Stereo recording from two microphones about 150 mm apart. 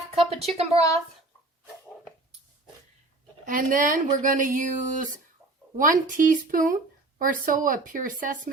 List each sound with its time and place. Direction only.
0.2 s speech: 40° right (ahead or behind)
3.4 s speech: 60° right (ahead or behind)